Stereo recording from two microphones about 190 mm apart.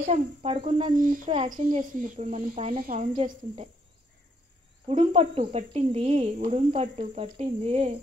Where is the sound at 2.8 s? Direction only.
45° right (ahead or behind).